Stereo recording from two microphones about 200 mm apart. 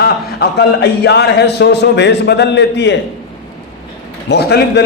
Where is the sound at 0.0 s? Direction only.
55° left (ahead or behind).